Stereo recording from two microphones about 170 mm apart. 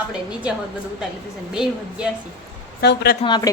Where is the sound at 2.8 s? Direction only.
75° left (ahead or behind).